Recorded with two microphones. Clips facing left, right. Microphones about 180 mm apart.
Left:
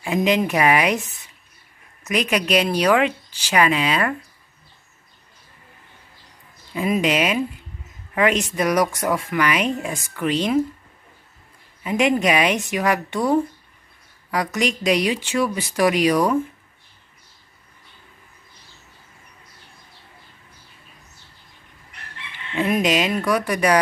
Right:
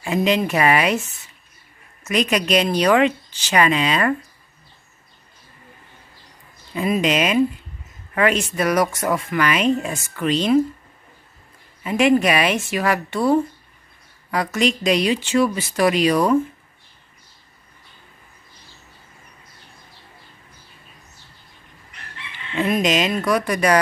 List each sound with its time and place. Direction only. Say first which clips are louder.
0.0 s speech: even; 10° left (ahead or behind)
2.0 s speech: right 1 dB; 10° left (ahead or behind)
6.7 s speech: right 1 dB; 10° left (ahead or behind)
11.8 s speech: right 3 dB; 15° left (ahead or behind)
22.6 s speech: even; 10° left (ahead or behind)